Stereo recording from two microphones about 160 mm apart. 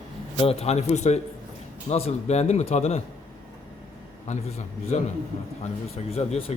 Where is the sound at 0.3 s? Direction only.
40° left (ahead or behind).